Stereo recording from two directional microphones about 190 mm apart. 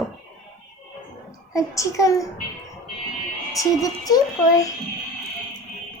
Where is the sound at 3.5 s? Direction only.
20° left (ahead or behind).